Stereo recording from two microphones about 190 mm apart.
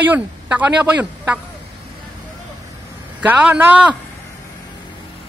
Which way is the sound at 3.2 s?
10° right (ahead or behind).